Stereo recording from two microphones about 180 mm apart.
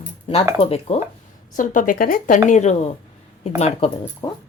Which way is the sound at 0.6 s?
35° left (ahead or behind).